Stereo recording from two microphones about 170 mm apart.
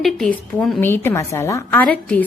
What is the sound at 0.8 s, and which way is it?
A woman's voice, 15° left (ahead or behind).